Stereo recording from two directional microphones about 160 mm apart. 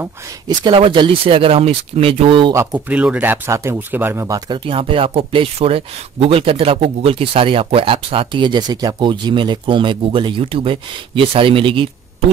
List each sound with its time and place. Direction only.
0.7 s speech: 30° right (ahead or behind)
2.5 s speech: 10° right (ahead or behind)
4.5 s speech: 35° right (ahead or behind)